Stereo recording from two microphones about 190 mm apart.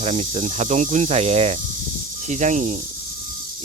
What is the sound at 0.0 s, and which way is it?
Speech, 35° right (ahead or behind).